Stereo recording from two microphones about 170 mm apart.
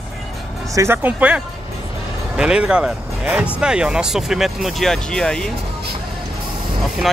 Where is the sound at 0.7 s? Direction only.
10° right (ahead or behind); by 5.5 s 5° left (ahead or behind).